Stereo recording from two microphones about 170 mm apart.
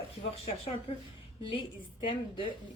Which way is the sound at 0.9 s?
35° left (ahead or behind).